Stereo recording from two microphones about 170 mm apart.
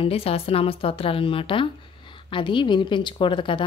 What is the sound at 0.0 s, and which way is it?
A woman's voice, 35° left (ahead or behind).